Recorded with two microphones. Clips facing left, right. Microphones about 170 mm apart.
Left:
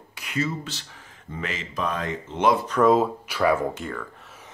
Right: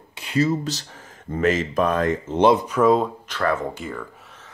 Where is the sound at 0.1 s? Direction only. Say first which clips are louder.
Right 7 dB; 30° right (ahead or behind); by 2.4 s 45° right (ahead or behind).